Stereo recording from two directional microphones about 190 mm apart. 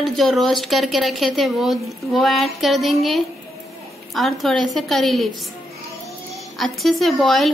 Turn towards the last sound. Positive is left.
turn(degrees=0)  # may be behind; listen again after turning